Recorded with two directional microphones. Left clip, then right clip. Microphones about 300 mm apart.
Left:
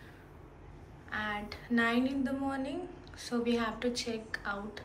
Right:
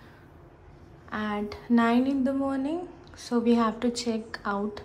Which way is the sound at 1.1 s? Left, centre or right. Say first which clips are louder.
Right 4 dB; right.